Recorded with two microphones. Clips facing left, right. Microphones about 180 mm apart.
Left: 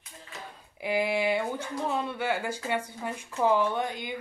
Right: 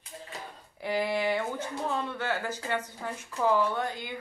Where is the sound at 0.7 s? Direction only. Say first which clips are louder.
Left 2 dB; 10° left (ahead or behind).